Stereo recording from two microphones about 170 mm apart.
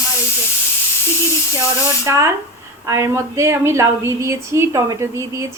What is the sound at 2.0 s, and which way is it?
A woman's voice, 15° right (ahead or behind).